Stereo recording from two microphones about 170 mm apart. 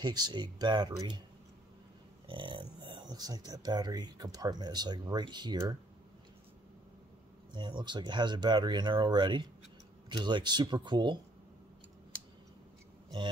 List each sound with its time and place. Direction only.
0.0 s speech: 25° right (ahead or behind)
2.2 s speech: 30° right (ahead or behind)
7.5 s speech: 25° right (ahead or behind)